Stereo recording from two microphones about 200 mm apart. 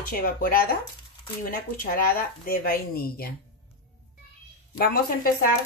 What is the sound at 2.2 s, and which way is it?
Speech, 45° left (ahead or behind).